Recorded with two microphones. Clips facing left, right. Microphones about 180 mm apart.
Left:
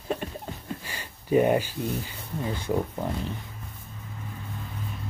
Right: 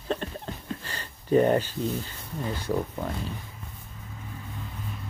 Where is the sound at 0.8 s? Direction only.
10° left (ahead or behind).